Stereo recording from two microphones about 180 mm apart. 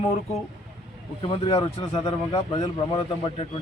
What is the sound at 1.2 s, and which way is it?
Speech, 30° left (ahead or behind).